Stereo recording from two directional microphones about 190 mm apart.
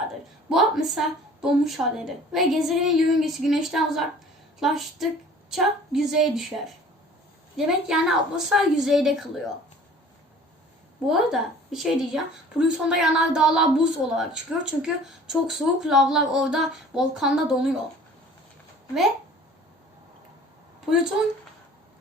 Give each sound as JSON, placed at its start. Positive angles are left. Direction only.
{"t": 0.5, "sound": "a woman's voice", "side_deg": 0}
{"t": 7.5, "sound": "a woman's voice", "side_deg": -5}
{"t": 11.0, "sound": "a woman's voice", "side_deg": 0}